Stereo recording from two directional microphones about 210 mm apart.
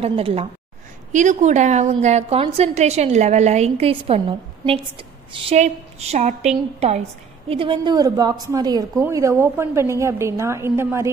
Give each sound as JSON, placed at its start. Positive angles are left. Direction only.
{"t": 0.0, "sound": "a woman's voice", "side_deg": -25}